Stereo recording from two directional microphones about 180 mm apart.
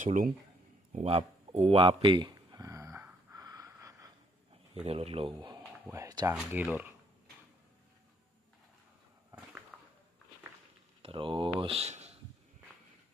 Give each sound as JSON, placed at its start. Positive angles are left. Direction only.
{"t": 0.0, "sound": "speech", "side_deg": -45}
{"t": 0.9, "sound": "a sound", "side_deg": -35}
{"t": 4.8, "sound": "speech", "side_deg": -35}
{"t": 5.9, "sound": "speech", "side_deg": -20}
{"t": 6.3, "sound": "speech", "side_deg": -5}
{"t": 11.0, "sound": "speech", "side_deg": -30}